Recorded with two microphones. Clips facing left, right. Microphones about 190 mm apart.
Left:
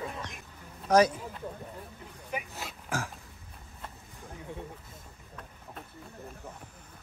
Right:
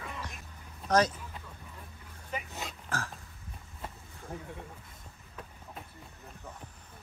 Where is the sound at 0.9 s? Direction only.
10° left (ahead or behind).